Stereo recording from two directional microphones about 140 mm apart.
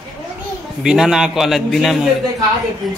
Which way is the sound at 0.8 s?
5° right (ahead or behind).